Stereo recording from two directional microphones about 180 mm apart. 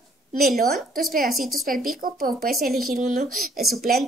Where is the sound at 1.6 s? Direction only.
50° right (ahead or behind).